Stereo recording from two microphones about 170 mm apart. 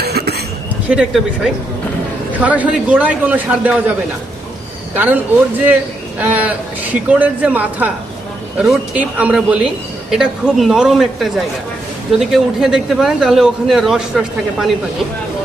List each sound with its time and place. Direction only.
0.0 s a sound: 70° right (ahead or behind)
0.9 s a man's voice: 5° right (ahead or behind)
4.9 s a man's voice: 10° right (ahead or behind)